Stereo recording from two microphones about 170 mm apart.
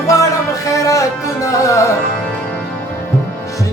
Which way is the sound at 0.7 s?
20° left (ahead or behind).